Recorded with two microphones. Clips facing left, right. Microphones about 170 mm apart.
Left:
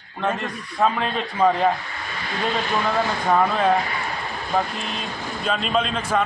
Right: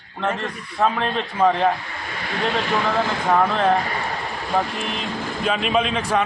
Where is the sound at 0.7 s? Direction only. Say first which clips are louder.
Right 1 dB; 5° left (ahead or behind).